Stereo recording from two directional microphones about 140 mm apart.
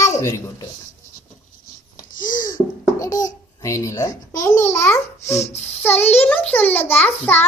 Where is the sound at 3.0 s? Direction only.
25° left (ahead or behind).